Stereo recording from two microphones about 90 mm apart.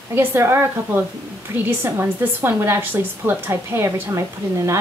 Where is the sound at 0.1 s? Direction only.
25° right (ahead or behind).